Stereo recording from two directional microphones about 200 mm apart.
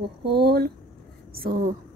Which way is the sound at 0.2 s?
55° right (ahead or behind).